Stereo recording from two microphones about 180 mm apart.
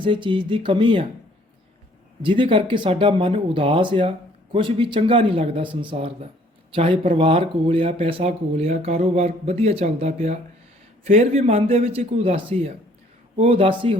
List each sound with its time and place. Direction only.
0.0 s speech: 30° right (ahead or behind)
2.2 s speech: 30° right (ahead or behind)